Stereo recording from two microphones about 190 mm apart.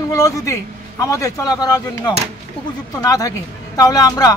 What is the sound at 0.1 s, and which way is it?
Speech, 15° left (ahead or behind).